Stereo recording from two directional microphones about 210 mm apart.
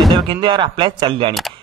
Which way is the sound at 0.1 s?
20° right (ahead or behind).